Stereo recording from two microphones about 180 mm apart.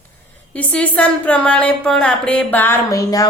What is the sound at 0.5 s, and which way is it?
Speech, 10° left (ahead or behind).